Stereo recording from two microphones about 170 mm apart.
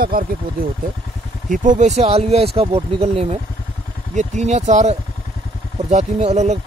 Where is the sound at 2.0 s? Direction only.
35° right (ahead or behind).